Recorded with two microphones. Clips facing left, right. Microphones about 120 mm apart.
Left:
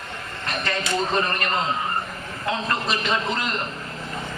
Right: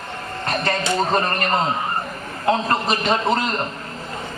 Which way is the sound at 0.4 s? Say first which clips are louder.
Right 5 dB; 40° right (ahead or behind).